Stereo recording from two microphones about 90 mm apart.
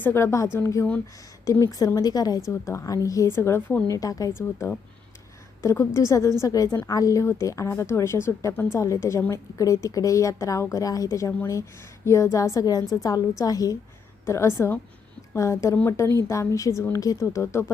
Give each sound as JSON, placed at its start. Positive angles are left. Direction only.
{"t": 0.0, "sound": "a woman's voice", "side_deg": 25}
{"t": 2.5, "sound": "a woman's voice", "side_deg": 30}
{"t": 4.4, "sound": "a woman's voice", "side_deg": 30}
{"t": 14.3, "sound": "a woman's voice", "side_deg": 30}